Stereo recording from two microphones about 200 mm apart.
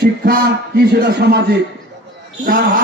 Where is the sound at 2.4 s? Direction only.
45° right (ahead or behind).